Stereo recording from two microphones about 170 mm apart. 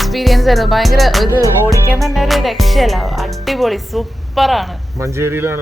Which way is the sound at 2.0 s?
Centre (ahead or behind).